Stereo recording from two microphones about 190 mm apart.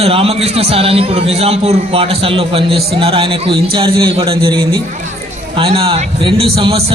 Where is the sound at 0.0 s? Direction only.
30° right (ahead or behind).